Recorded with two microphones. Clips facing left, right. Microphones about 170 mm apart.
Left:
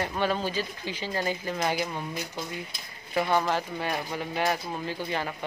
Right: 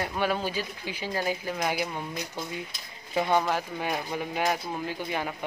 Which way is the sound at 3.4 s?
10° right (ahead or behind).